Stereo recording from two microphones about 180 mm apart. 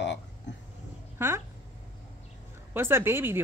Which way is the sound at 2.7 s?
15° right (ahead or behind).